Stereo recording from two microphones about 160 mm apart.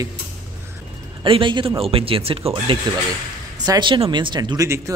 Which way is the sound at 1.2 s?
30° right (ahead or behind).